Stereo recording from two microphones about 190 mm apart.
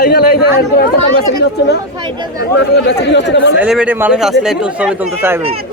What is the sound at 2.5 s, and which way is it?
Speech, 65° left (ahead or behind).